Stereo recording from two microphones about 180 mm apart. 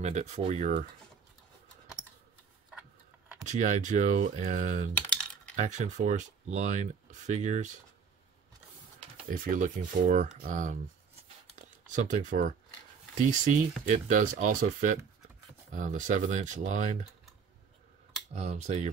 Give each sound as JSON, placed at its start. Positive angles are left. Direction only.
{"t": 0.0, "sound": "speech", "side_deg": -40}
{"t": 3.4, "sound": "speech", "side_deg": -40}
{"t": 5.1, "sound": "typing", "side_deg": 5}
{"t": 5.6, "sound": "speech", "side_deg": -40}
{"t": 9.3, "sound": "speech", "side_deg": -50}
{"t": 18.3, "sound": "speech", "side_deg": -40}